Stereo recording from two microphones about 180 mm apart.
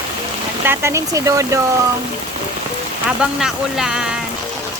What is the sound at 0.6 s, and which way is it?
A woman's voice, 15° right (ahead or behind).